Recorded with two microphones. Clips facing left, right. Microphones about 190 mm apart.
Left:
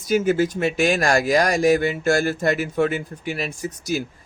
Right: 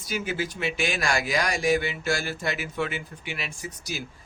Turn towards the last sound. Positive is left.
turn(degrees=45)  # may be behind; listen again after turning